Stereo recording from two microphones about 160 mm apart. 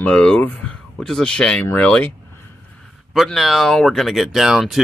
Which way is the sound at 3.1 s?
Centre (ahead or behind).